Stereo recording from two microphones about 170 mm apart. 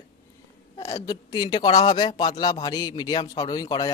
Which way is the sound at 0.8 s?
20° left (ahead or behind).